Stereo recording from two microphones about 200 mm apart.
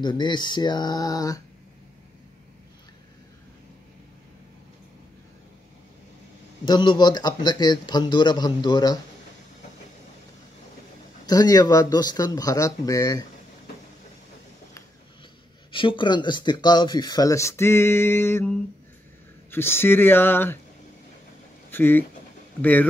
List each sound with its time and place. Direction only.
0.0 s speech: 20° left (ahead or behind)
6.6 s speech: 20° left (ahead or behind)
11.2 s speech: 20° left (ahead or behind)
15.7 s speech: 25° left (ahead or behind)
21.6 s a sound: 10° left (ahead or behind)
22.6 s speech: 10° left (ahead or behind)